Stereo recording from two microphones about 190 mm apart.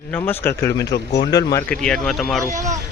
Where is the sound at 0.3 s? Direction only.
15° left (ahead or behind).